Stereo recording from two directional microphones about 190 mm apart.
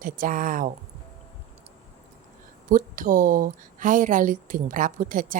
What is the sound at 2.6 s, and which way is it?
A woman's voice, 45° right (ahead or behind).